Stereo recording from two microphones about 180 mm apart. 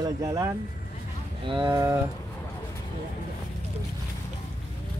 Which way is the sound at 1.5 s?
25° right (ahead or behind).